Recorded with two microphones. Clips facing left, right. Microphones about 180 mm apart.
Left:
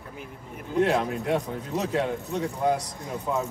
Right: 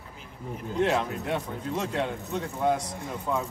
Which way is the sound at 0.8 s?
5° left (ahead or behind).